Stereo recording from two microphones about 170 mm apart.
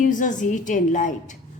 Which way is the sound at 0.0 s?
50° left (ahead or behind).